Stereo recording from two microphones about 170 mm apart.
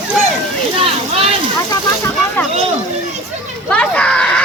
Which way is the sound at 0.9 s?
35° right (ahead or behind).